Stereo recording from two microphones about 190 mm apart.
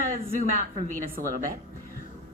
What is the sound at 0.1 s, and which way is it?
A woman's voice, 40° right (ahead or behind).